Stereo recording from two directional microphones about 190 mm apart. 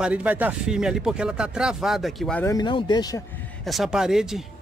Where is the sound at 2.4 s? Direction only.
20° left (ahead or behind).